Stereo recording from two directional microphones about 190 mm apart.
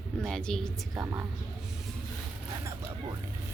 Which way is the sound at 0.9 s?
20° right (ahead or behind).